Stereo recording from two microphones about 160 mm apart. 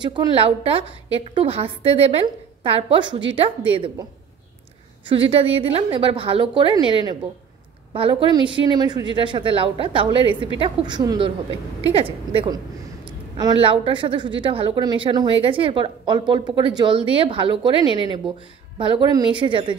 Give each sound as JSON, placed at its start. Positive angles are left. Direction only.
{"t": 0.0, "sound": "speech", "side_deg": -30}
{"t": 5.0, "sound": "speech", "side_deg": -35}
{"t": 6.7, "sound": "speech", "side_deg": 30}
{"t": 7.9, "sound": "speech", "side_deg": -35}
{"t": 13.0, "sound": "a sound", "side_deg": -25}
{"t": 13.6, "sound": "speech", "side_deg": -35}
{"t": 17.7, "sound": "speech", "side_deg": 35}
{"t": 18.8, "sound": "speech", "side_deg": -30}